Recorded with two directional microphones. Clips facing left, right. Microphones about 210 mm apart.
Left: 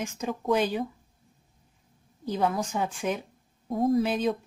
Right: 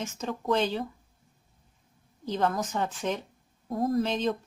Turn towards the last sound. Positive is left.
turn(degrees=10)  # may be behind; listen again after turning